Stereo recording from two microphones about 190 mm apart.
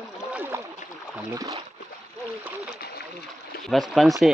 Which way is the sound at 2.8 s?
55° left (ahead or behind).